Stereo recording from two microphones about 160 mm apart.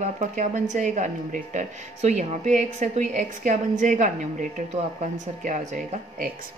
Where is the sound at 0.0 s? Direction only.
50° right (ahead or behind).